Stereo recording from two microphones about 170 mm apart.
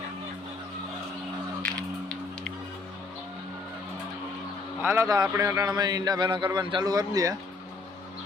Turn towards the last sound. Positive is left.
turn(degrees=-20)  # may be behind; listen again after turning